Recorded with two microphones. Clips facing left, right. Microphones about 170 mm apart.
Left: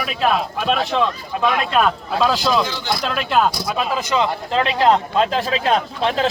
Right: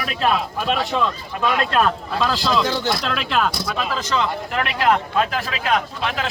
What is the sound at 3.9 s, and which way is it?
Speech, 15° left (ahead or behind).